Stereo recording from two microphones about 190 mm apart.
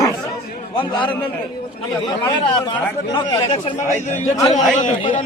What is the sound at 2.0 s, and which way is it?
Speech, 20° left (ahead or behind).